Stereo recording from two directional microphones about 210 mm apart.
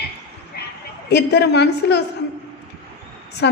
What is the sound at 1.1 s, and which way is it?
Speech, 50° left (ahead or behind).